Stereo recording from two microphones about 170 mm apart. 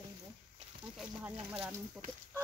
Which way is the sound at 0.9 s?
10° right (ahead or behind).